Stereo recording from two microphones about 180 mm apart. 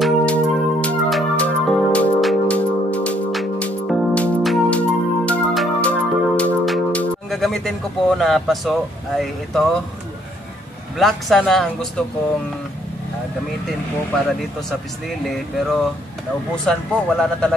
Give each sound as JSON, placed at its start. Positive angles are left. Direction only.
{"t": 0.0, "sound": "music", "side_deg": 5}
{"t": 11.0, "sound": "speech", "side_deg": 0}
{"t": 15.2, "sound": "speech", "side_deg": 0}